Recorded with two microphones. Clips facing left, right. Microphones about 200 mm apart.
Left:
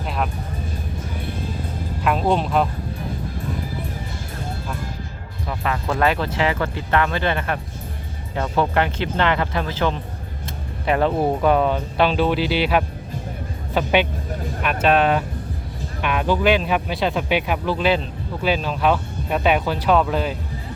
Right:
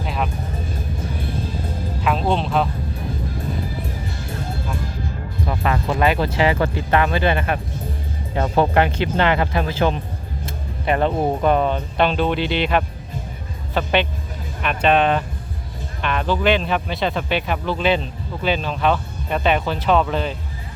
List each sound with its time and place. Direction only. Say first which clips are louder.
0.0 s music: even; centre (ahead or behind)
2.0 s music: left 1 dB; 5° left (ahead or behind)
5.5 s music: right 3 dB; 30° right (ahead or behind)
5.9 s speech: even; 10° right (ahead or behind)
8.4 s speech: right 3 dB; 30° right (ahead or behind)
8.7 s speech: right 3 dB; 15° right (ahead or behind)
10.4 s speech: even; centre (ahead or behind)